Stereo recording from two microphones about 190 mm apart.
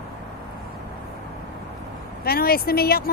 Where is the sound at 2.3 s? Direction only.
50° left (ahead or behind).